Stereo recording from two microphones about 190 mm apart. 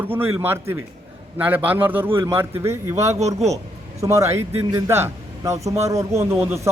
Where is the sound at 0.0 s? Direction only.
10° right (ahead or behind).